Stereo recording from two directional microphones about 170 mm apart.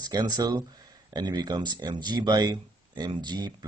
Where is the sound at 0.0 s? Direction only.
25° right (ahead or behind).